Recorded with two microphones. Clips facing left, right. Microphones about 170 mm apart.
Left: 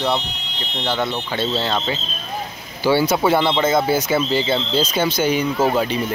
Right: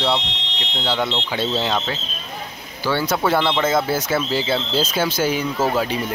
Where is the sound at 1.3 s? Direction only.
10° right (ahead or behind).